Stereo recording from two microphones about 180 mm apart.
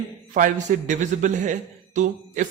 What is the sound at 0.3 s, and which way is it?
A man's voice, 45° right (ahead or behind).